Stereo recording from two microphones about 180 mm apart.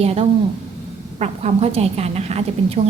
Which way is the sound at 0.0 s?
35° right (ahead or behind).